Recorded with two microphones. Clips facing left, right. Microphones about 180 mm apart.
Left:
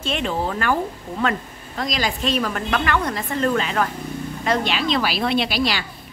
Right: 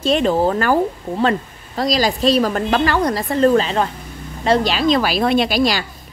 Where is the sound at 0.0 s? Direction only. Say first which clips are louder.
Right 8 dB; 40° right (ahead or behind).